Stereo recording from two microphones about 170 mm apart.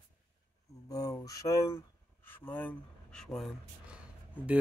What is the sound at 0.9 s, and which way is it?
Speech, 20° left (ahead or behind).